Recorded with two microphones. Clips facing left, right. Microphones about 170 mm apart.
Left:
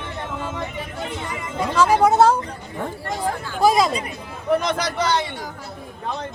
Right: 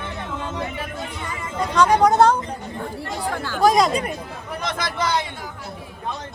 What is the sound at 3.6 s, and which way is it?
Speech, 5° left (ahead or behind).